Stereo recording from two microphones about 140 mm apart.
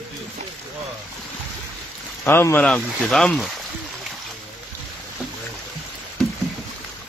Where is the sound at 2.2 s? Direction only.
15° left (ahead or behind).